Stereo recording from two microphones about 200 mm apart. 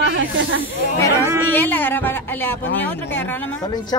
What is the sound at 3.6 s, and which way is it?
Speech, 20° left (ahead or behind).